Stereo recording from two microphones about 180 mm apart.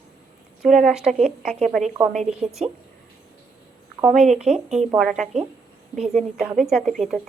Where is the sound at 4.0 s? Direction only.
5° right (ahead or behind).